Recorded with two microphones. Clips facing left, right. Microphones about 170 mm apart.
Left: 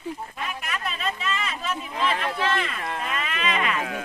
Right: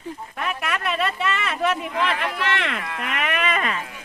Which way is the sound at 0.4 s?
65° right (ahead or behind).